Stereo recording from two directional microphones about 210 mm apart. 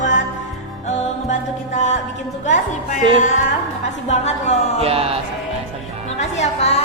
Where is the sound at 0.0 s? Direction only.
35° left (ahead or behind).